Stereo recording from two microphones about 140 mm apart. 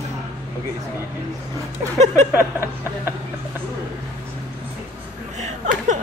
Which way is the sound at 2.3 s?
15° right (ahead or behind).